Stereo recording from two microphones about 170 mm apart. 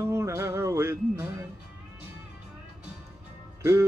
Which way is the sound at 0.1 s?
15° right (ahead or behind).